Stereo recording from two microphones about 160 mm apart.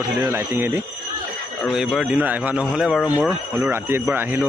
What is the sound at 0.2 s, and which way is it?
Speech, 15° right (ahead or behind).